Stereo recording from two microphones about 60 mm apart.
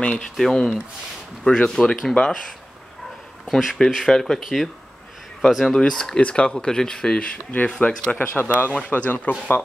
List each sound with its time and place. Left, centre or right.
0.0 s speech: centre
3.4 s speech: centre; by 9.3 s left